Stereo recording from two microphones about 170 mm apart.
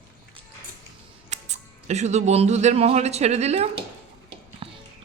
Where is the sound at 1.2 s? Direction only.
40° right (ahead or behind).